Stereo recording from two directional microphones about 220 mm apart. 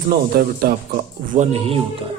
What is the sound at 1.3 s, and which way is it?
Speech, 30° right (ahead or behind).